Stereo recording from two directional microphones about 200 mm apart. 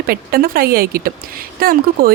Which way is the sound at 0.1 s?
50° right (ahead or behind).